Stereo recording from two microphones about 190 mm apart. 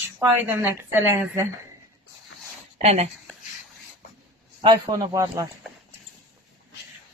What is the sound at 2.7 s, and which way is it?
Speech, 35° right (ahead or behind).